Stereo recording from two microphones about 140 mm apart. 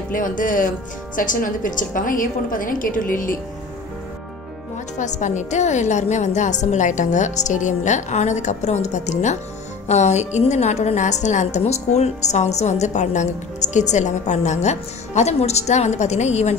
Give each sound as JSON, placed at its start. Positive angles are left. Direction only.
{"t": 0.1, "sound": "a woman's voice", "side_deg": 70}
{"t": 4.9, "sound": "a woman's voice", "side_deg": 60}